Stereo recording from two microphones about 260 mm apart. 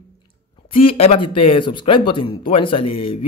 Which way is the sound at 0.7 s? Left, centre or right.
Left.